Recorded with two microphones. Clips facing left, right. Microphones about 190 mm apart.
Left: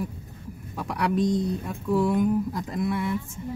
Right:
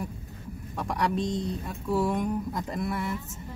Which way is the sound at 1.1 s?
25° right (ahead or behind).